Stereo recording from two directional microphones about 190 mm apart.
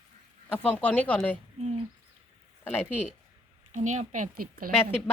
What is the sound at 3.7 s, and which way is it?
Speech, 40° right (ahead or behind).